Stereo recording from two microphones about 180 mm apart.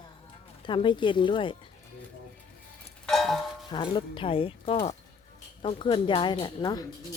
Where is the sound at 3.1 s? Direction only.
Centre (ahead or behind).